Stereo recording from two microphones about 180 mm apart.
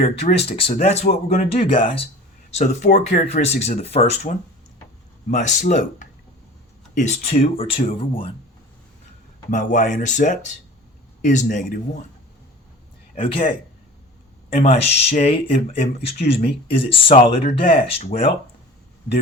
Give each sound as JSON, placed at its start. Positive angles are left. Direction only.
{"t": 0.2, "sound": "speech", "side_deg": 35}
{"t": 9.5, "sound": "speech", "side_deg": 45}
{"t": 13.1, "sound": "speech", "side_deg": 30}
{"t": 14.5, "sound": "speech", "side_deg": 35}